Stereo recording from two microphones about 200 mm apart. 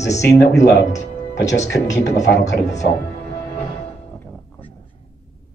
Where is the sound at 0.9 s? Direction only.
15° left (ahead or behind).